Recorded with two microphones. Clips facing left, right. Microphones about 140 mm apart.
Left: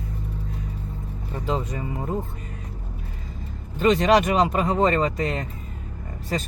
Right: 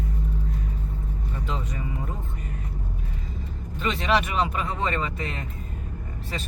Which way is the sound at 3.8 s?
40° left (ahead or behind).